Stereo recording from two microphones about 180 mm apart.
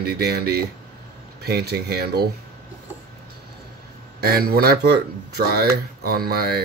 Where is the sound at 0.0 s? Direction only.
60° right (ahead or behind).